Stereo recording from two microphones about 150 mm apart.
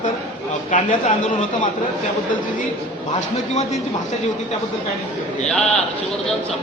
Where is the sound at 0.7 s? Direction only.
60° left (ahead or behind).